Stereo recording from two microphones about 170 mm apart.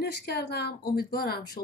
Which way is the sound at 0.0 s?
75° left (ahead or behind).